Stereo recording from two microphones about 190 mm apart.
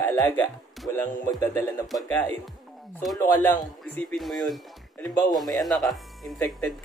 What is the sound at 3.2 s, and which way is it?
Speech, 15° left (ahead or behind).